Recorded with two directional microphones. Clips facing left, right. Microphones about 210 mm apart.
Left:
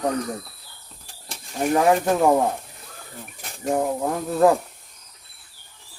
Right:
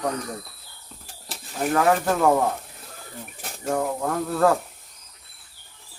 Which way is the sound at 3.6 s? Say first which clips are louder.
Left 2 dB; 20° left (ahead or behind).